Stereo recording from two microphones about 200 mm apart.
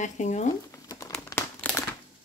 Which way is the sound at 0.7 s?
15° left (ahead or behind).